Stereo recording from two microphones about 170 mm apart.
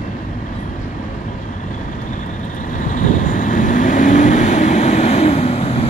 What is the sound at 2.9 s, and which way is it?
Vehicle, 50° left (ahead or behind).